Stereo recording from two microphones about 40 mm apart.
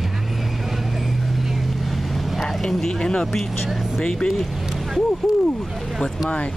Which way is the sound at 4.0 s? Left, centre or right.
Centre.